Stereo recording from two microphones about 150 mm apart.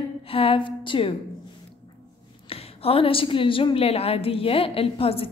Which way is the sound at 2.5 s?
40° left (ahead or behind).